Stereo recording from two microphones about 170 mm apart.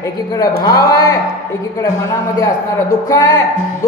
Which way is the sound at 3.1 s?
20° left (ahead or behind).